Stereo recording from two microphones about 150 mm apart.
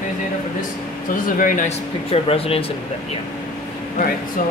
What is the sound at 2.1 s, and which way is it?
Speech, 40° left (ahead or behind).